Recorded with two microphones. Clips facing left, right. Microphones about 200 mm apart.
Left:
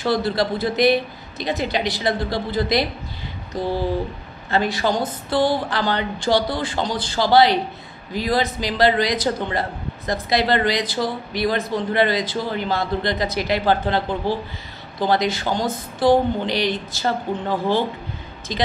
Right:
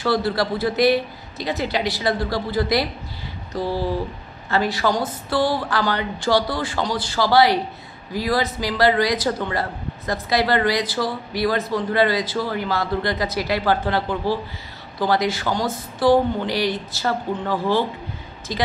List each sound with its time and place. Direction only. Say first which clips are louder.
0.0 s a man's voice: even; 20° left (ahead or behind)
3.5 s a sound: left 1 dB; 20° left (ahead or behind)
4.5 s a man's voice: even; 20° left (ahead or behind)